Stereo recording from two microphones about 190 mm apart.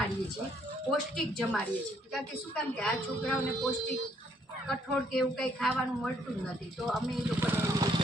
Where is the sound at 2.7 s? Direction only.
5° left (ahead or behind).